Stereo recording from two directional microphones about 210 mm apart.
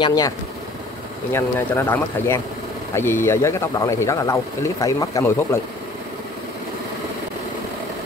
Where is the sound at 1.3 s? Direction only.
10° left (ahead or behind).